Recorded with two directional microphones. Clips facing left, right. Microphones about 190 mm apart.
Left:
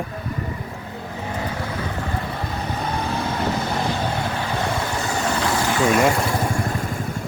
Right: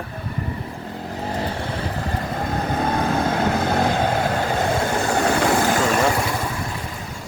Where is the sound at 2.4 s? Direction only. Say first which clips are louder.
Right 4 dB; 50° right (ahead or behind).